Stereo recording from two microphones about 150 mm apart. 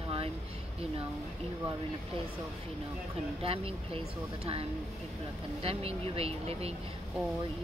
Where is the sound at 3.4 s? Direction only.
40° right (ahead or behind).